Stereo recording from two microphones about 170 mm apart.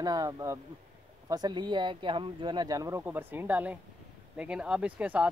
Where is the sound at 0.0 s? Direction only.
20° right (ahead or behind).